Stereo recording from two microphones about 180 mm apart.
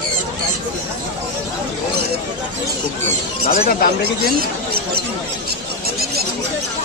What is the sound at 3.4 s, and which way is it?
Speech, 55° left (ahead or behind).